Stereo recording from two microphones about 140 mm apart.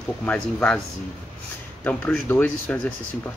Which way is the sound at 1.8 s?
15° left (ahead or behind).